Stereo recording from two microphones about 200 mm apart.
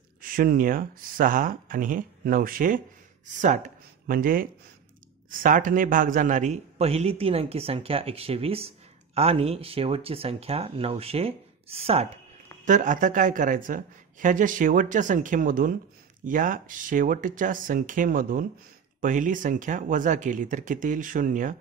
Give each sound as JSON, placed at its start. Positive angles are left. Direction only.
{"t": 0.2, "sound": "a man's voice", "side_deg": -45}